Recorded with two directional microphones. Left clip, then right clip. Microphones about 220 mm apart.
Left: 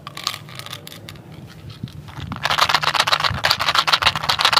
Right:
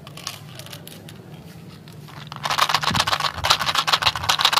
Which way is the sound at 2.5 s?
10° left (ahead or behind).